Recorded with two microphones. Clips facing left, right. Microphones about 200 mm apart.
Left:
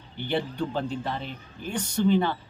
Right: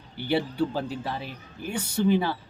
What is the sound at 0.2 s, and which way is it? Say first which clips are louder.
A man's voice: right 3 dB; 5° right (ahead or behind).